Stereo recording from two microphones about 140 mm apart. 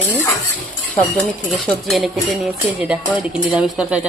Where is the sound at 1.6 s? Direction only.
Centre (ahead or behind).